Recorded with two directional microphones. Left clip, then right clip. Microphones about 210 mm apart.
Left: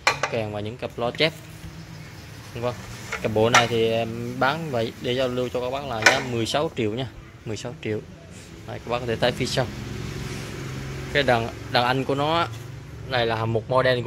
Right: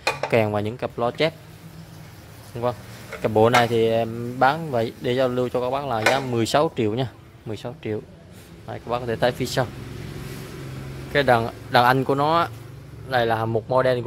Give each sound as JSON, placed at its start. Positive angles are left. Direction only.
{"t": 0.3, "sound": "speech", "side_deg": -35}
{"t": 2.6, "sound": "speech", "side_deg": -20}
{"t": 7.5, "sound": "speech", "side_deg": -5}
{"t": 11.1, "sound": "speech", "side_deg": -20}